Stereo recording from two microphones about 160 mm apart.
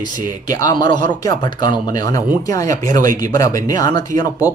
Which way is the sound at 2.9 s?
60° right (ahead or behind).